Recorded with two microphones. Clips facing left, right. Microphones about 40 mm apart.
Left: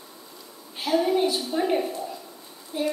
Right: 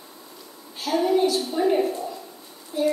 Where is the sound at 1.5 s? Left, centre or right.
Centre.